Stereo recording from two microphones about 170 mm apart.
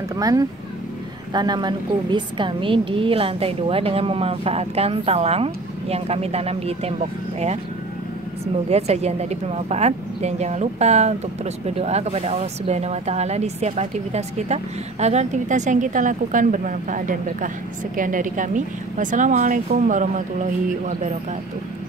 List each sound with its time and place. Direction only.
0.1 s speech: 20° right (ahead or behind); by 7.5 s 40° right (ahead or behind)
8.6 s speech: 40° right (ahead or behind)